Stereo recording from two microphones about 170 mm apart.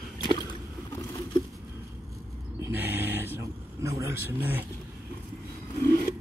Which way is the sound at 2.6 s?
10° right (ahead or behind).